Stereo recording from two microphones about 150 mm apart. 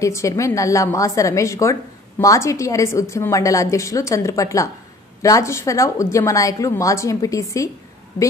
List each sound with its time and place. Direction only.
0.0 s a woman's voice: 20° left (ahead or behind)